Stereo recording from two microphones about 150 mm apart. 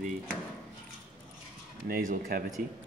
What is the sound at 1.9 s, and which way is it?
Speech, 75° right (ahead or behind).